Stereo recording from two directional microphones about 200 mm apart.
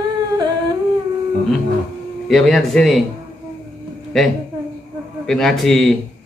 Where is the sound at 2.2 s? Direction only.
Centre (ahead or behind).